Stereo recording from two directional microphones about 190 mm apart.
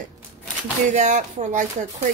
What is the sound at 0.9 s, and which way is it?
Speech, 40° right (ahead or behind).